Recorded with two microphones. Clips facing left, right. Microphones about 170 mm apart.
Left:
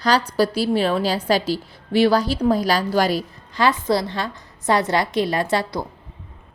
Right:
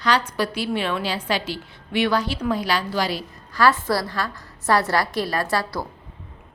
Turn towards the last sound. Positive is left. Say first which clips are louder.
# left 3 dB
turn(degrees=20)  # may be behind; listen again after turning